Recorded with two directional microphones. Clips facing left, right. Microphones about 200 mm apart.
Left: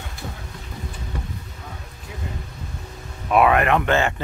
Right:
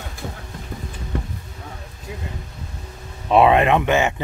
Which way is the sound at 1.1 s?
50° right (ahead or behind).